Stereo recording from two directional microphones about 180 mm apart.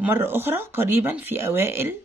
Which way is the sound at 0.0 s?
10° right (ahead or behind).